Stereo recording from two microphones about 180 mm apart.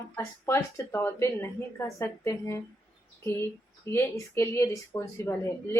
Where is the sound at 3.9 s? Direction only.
15° left (ahead or behind).